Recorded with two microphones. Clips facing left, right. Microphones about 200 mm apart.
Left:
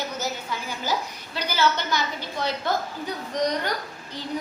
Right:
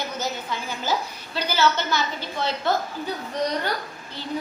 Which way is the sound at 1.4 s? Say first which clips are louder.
Right 2 dB; 15° left (ahead or behind).